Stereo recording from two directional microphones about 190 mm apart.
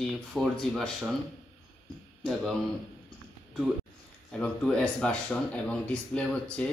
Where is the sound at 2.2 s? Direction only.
Centre (ahead or behind).